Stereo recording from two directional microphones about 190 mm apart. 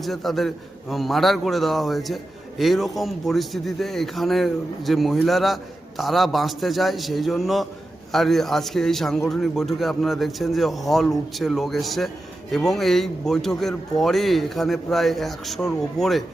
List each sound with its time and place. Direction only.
0.0 s a man's voice: centre (ahead or behind)